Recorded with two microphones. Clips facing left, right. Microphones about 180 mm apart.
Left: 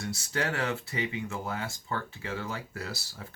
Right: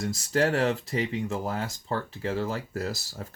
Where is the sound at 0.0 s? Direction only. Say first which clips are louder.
Right 7 dB; 35° right (ahead or behind).